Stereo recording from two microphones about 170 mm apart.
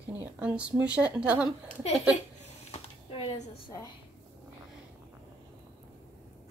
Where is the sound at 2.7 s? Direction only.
35° left (ahead or behind).